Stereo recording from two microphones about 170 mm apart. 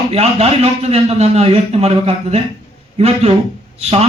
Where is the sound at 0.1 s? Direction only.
35° right (ahead or behind).